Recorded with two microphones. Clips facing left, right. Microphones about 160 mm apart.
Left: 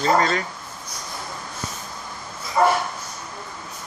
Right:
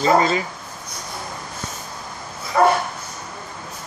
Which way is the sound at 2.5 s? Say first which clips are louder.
Right 3 dB; 75° right (ahead or behind).